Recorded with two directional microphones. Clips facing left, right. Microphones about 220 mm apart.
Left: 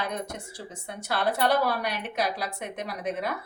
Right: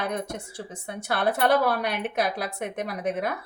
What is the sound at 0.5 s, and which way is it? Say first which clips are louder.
A woman's voice: right 3 dB; 50° right (ahead or behind).